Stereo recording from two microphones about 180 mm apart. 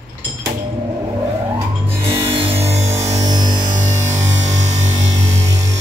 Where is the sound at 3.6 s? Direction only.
45° right (ahead or behind).